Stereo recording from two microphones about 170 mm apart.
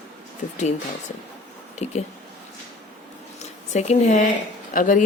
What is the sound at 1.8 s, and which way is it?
Speech, 40° left (ahead or behind).